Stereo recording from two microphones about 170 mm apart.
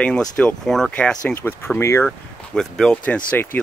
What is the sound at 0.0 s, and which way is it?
Speech, 5° left (ahead or behind).